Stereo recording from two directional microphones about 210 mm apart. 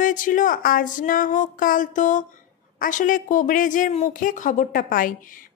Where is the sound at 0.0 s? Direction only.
40° left (ahead or behind).